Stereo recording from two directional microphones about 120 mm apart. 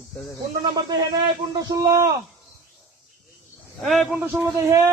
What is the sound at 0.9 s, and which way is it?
A man's voice, 35° right (ahead or behind).